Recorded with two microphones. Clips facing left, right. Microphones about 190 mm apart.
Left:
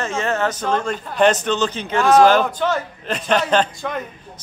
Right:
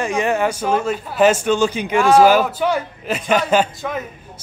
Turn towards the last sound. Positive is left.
turn(degrees=-5)  # may be behind; listen again after turning